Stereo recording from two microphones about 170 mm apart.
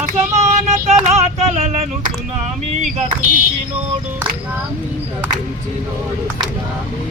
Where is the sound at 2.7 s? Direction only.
45° right (ahead or behind).